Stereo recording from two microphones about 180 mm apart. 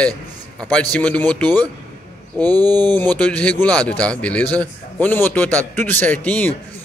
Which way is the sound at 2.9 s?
10° left (ahead or behind).